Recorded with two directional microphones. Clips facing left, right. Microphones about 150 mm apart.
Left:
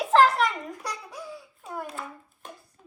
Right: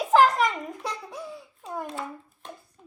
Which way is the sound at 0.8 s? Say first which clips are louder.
Right 2 dB; 25° right (ahead or behind).